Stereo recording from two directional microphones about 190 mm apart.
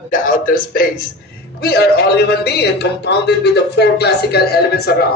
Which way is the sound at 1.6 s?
55° left (ahead or behind).